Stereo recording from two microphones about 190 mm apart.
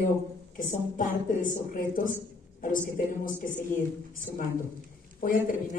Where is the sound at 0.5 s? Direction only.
45° left (ahead or behind).